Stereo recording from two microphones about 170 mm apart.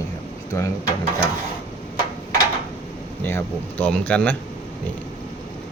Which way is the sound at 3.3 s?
10° left (ahead or behind).